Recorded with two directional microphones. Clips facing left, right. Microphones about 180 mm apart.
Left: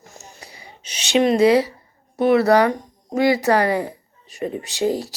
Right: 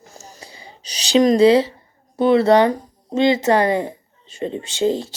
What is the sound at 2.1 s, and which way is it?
A woman's voice, 30° right (ahead or behind).